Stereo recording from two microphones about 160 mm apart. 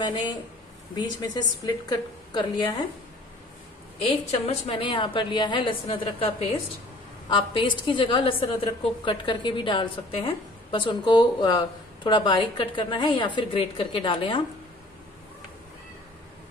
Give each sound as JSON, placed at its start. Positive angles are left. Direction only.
{"t": 0.0, "sound": "a woman's voice", "side_deg": 25}
{"t": 4.3, "sound": "a woman's voice", "side_deg": 35}